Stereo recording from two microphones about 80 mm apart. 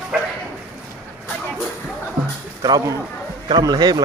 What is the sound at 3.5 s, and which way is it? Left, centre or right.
Speech, right.